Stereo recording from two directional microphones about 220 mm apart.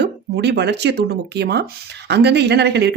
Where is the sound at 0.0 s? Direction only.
50° right (ahead or behind).